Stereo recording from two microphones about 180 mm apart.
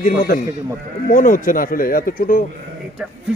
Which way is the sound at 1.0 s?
45° left (ahead or behind).